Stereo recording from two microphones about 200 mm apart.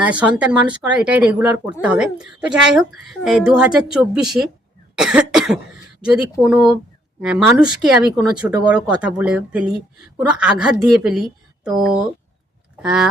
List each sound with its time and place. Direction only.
0.0 s speech: 5° right (ahead or behind)
4.9 s cough: 5° right (ahead or behind)
6.0 s speech: 5° right (ahead or behind)